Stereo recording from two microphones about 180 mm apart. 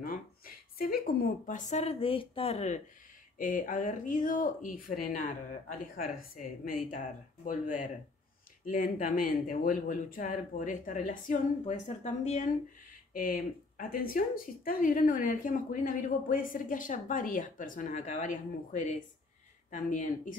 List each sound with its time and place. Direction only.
0.7 s speech: 55° left (ahead or behind); by 2.8 s 40° left (ahead or behind)
3.3 s speech: 50° left (ahead or behind)